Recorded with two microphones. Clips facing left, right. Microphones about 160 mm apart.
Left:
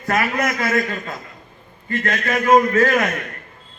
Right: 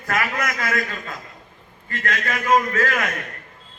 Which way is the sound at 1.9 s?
25° left (ahead or behind).